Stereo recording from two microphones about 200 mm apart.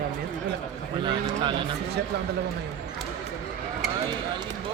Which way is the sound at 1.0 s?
25° right (ahead or behind).